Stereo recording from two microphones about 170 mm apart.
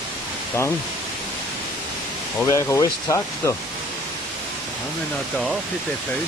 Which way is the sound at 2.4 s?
20° left (ahead or behind).